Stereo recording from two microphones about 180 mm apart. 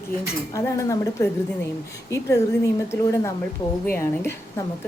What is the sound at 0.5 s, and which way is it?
A woman's voice, 20° left (ahead or behind).